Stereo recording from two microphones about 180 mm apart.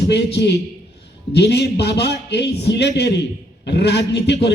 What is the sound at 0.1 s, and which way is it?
A man's voice, 70° left (ahead or behind).